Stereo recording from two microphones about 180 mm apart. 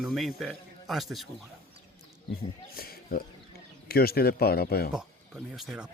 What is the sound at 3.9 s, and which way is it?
Speech, 60° left (ahead or behind).